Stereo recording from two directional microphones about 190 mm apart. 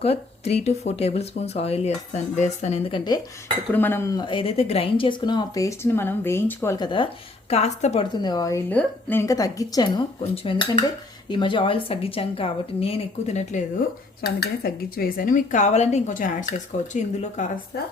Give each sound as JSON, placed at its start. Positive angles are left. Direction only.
{"t": 0.0, "sound": "speech", "side_deg": 35}
{"t": 3.7, "sound": "speech", "side_deg": 10}
{"t": 7.5, "sound": "speech", "side_deg": 35}
{"t": 8.2, "sound": "speech", "side_deg": 20}
{"t": 14.2, "sound": "speech", "side_deg": 55}